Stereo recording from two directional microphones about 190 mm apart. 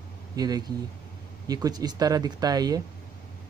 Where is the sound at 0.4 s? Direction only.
20° right (ahead or behind).